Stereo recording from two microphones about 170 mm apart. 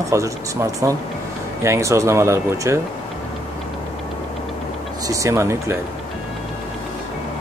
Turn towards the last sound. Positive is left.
turn(degrees=-15)  # may be behind; listen again after turning